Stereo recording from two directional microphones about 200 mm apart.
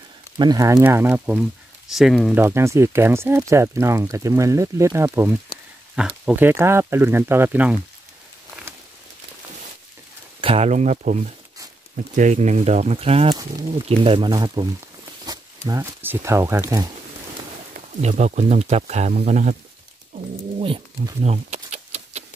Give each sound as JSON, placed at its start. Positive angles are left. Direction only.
{"t": 0.4, "sound": "speech", "side_deg": -20}
{"t": 2.4, "sound": "speech", "side_deg": -15}
{"t": 10.4, "sound": "speech", "side_deg": -30}
{"t": 13.3, "sound": "speech", "side_deg": -20}
{"t": 18.0, "sound": "speech", "side_deg": -35}
{"t": 20.5, "sound": "speech", "side_deg": -25}